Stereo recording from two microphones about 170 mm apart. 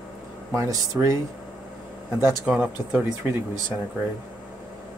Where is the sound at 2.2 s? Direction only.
5° right (ahead or behind).